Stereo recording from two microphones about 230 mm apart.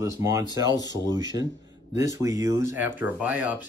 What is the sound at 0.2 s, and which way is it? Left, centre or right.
Speech, centre.